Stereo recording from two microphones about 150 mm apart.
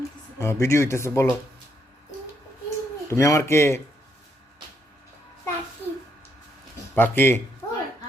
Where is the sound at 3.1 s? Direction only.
20° left (ahead or behind).